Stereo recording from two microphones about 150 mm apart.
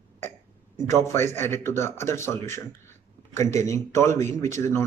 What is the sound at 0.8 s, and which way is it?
A man's voice, 20° left (ahead or behind).